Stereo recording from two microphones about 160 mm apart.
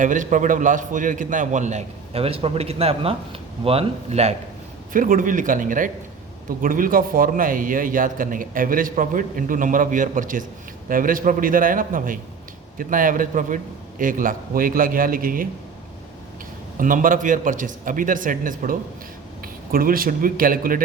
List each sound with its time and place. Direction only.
0.0 s a man's voice: 55° right (ahead or behind)
4.9 s a man's voice: 60° right (ahead or behind)
16.7 s a man's voice: 55° right (ahead or behind)